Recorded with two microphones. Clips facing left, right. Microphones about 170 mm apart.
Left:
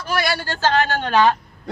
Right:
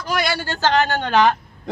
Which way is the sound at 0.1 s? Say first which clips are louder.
Even; 20° right (ahead or behind).